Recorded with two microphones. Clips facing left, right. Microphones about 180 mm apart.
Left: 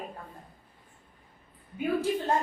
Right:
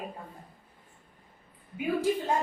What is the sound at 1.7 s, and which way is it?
Speech, 10° right (ahead or behind).